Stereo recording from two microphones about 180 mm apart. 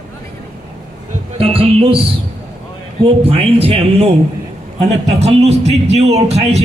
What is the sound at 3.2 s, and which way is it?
A man's voice, 35° right (ahead or behind).